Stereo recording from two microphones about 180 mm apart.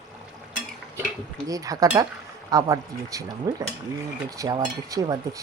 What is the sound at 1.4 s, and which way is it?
Speech, 20° right (ahead or behind).